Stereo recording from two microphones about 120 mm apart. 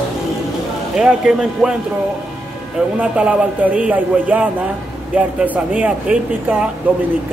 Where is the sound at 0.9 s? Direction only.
5° right (ahead or behind).